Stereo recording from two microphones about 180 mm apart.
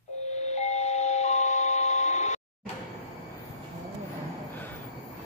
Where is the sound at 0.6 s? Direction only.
40° left (ahead or behind).